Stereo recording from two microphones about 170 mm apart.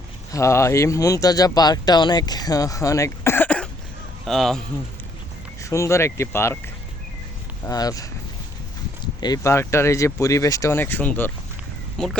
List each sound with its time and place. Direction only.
0.3 s a man's voice: 20° left (ahead or behind); by 4.6 s centre (ahead or behind)
5.6 s speech: 15° left (ahead or behind)
7.6 s speech: 20° left (ahead or behind)
9.2 s a man's voice: 20° left (ahead or behind); by 12.1 s 5° left (ahead or behind)